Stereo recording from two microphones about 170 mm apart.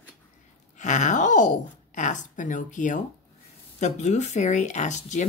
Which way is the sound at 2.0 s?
45° left (ahead or behind).